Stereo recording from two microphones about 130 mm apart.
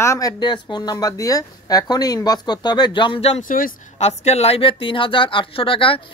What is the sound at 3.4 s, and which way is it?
Speech, 90° left.